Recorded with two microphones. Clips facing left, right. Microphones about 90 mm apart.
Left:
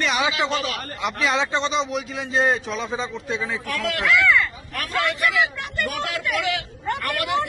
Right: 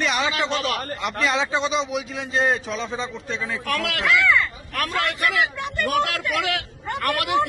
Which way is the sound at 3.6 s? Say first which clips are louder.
Right 1 dB; 70° right (ahead or behind).